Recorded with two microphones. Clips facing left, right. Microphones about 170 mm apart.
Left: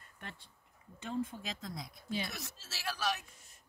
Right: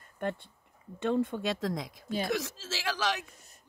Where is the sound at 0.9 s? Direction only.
65° right (ahead or behind).